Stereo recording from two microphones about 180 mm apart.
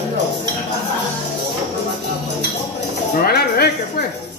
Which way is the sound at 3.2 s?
60° left (ahead or behind).